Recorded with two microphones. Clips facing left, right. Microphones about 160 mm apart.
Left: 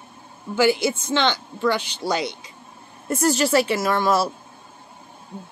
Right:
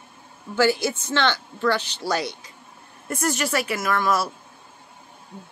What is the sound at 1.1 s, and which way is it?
A woman's voice, 15° left (ahead or behind).